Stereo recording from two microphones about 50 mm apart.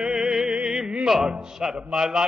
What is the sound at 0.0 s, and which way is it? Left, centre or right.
Music, centre.